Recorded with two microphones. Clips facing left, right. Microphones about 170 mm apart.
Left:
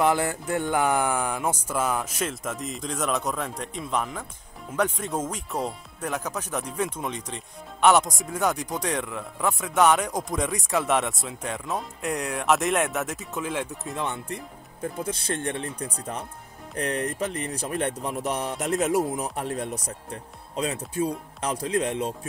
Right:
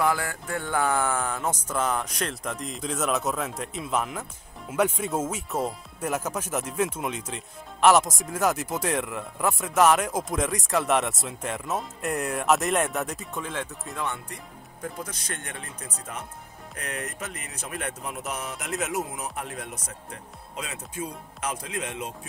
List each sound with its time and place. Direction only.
0.0 s speech: 20° left (ahead or behind)
13.9 s speech: 20° left (ahead or behind)